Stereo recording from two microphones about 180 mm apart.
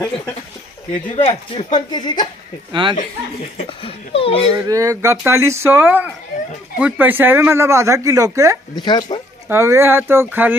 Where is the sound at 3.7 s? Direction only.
30° left (ahead or behind).